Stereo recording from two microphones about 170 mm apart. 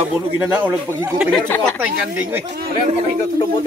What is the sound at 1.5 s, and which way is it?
Speech, 10° left (ahead or behind).